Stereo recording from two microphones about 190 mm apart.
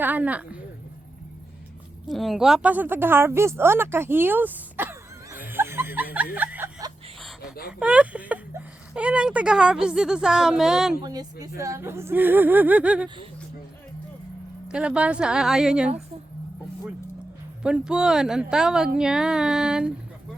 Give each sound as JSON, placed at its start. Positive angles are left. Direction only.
{"t": 0.0, "sound": "speech", "side_deg": -10}
{"t": 2.0, "sound": "a woman's voice", "side_deg": 0}
{"t": 6.3, "sound": "a sound", "side_deg": -10}
{"t": 7.8, "sound": "a woman's voice", "side_deg": -5}
{"t": 11.0, "sound": "speech", "side_deg": -20}
{"t": 14.7, "sound": "a woman's voice", "side_deg": -5}
{"t": 17.6, "sound": "a woman's voice", "side_deg": -5}